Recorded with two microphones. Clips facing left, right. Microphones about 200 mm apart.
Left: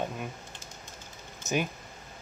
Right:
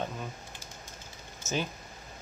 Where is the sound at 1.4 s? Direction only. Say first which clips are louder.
Left 3 dB; 15° left (ahead or behind).